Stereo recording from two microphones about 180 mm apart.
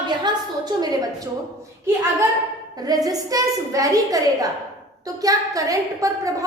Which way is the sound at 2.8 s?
20° right (ahead or behind).